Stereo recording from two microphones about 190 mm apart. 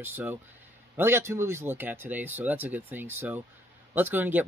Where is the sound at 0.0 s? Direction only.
10° right (ahead or behind).